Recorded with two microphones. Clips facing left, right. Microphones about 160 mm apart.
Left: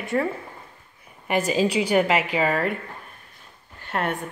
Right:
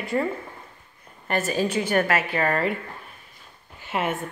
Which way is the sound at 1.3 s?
15° left (ahead or behind).